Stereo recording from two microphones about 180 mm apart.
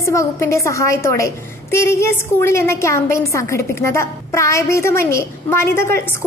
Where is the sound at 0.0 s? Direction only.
15° left (ahead or behind).